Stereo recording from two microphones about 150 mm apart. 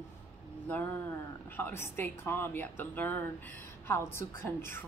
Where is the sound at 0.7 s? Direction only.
10° left (ahead or behind).